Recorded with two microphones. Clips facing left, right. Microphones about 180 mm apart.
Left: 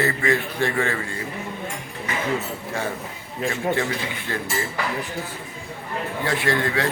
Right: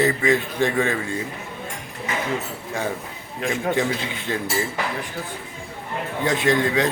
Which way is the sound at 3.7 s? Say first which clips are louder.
Right 2 dB; 20° right (ahead or behind).